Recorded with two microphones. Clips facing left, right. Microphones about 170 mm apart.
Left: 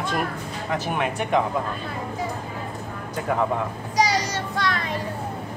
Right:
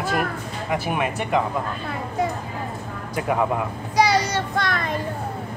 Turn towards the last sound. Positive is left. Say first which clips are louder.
# right 2 dB
turn(degrees=-50)  # may be behind; listen again after turning